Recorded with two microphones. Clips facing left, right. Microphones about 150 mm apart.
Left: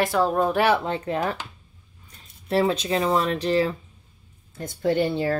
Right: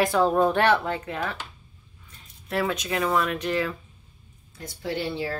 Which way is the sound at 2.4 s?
30° left (ahead or behind).